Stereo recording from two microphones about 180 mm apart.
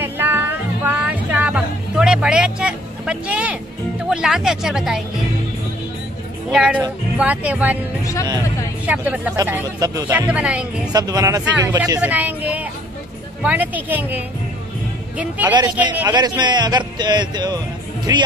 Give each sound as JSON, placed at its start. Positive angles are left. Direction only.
{"t": 0.0, "sound": "music", "side_deg": -10}
{"t": 4.1, "sound": "speech", "side_deg": -5}
{"t": 6.5, "sound": "speech", "side_deg": -5}
{"t": 8.0, "sound": "music", "side_deg": 20}
{"t": 8.8, "sound": "speech", "side_deg": -10}
{"t": 10.9, "sound": "a man's voice", "side_deg": -20}
{"t": 16.1, "sound": "a man's voice", "side_deg": -25}